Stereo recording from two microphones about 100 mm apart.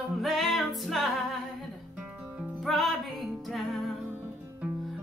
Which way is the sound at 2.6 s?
Centre (ahead or behind).